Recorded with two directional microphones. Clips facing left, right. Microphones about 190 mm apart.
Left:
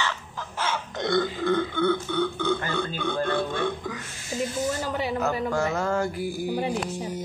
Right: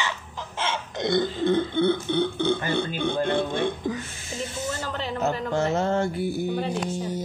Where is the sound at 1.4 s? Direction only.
25° right (ahead or behind).